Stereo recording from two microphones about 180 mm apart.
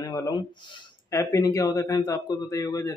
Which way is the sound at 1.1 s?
20° left (ahead or behind).